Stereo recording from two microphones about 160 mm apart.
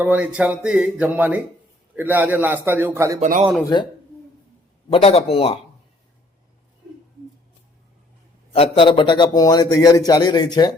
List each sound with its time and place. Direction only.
0.0 s speech: 10° right (ahead or behind)
3.2 s speech: 55° right (ahead or behind)
4.9 s a man's voice: 40° left (ahead or behind)
8.5 s a man's voice: 35° left (ahead or behind)